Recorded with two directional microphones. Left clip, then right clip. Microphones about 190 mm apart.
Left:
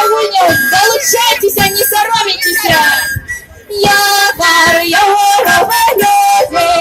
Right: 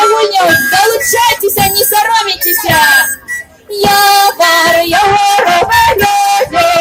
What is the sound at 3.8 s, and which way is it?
Music, 40° right (ahead or behind).